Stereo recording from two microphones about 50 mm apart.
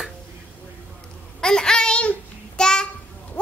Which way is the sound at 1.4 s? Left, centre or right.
Centre.